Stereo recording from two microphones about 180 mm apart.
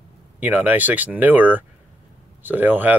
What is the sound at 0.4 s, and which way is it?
Speech, 10° right (ahead or behind).